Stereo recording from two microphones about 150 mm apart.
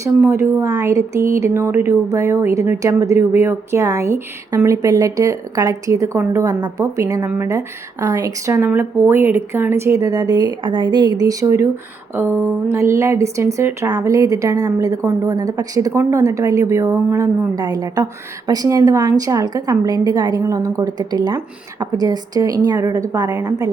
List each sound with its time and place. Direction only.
0.3 s speech: 20° right (ahead or behind)
12.1 s a sound: 15° right (ahead or behind)
12.7 s speech: 20° right (ahead or behind)